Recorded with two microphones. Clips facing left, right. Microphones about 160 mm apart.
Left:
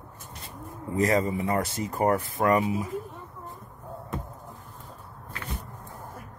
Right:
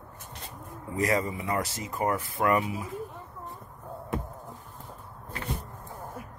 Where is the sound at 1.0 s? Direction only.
30° left (ahead or behind).